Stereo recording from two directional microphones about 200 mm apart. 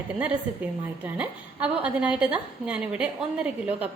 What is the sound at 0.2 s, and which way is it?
A woman's voice, 5° right (ahead or behind).